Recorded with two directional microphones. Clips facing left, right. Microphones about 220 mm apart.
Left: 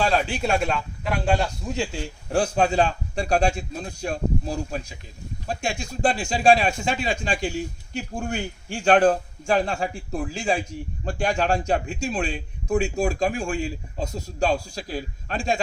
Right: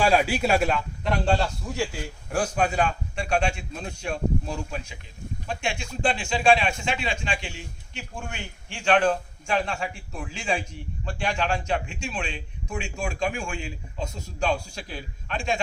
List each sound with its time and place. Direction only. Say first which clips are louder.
0.0 s a man's voice: right 1 dB; 10° right (ahead or behind); by 15.6 s 35° left (ahead or behind)